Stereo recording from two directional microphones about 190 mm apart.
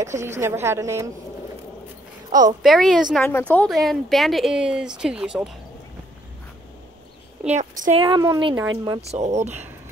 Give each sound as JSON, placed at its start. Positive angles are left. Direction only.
{"t": 0.2, "sound": "a woman's voice", "side_deg": -15}
{"t": 2.6, "sound": "speech", "side_deg": 0}
{"t": 7.5, "sound": "speech", "side_deg": -40}
{"t": 8.0, "sound": "speech", "side_deg": -25}
{"t": 9.1, "sound": "speech", "side_deg": -35}